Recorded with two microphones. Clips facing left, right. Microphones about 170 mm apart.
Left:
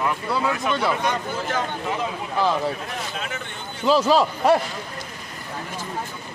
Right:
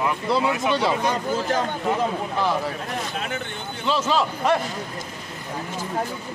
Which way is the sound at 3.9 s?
35° left (ahead or behind).